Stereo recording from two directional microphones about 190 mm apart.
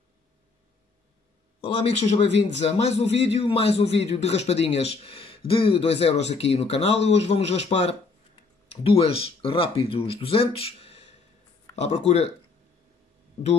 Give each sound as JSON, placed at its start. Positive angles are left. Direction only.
{"t": 1.6, "sound": "a man's voice", "side_deg": 30}